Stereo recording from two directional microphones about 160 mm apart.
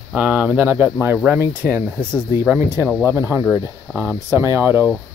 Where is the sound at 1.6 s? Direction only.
5° left (ahead or behind).